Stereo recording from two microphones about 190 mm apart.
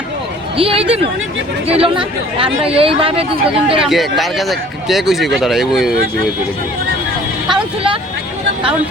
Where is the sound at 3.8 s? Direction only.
Centre (ahead or behind).